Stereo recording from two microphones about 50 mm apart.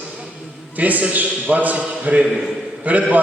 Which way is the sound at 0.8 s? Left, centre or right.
Right.